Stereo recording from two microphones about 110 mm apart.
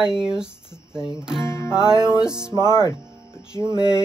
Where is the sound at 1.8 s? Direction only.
40° right (ahead or behind).